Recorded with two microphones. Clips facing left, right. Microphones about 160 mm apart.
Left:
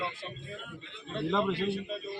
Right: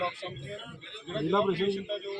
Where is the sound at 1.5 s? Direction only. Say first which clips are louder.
Right 3 dB; 35° right (ahead or behind).